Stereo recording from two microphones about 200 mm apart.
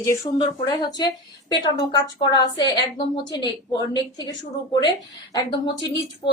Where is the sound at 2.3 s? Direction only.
20° left (ahead or behind).